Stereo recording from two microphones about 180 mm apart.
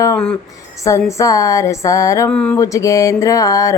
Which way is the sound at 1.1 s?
20° left (ahead or behind).